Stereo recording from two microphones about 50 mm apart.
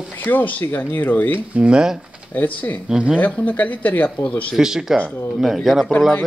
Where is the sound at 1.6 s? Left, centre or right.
Centre.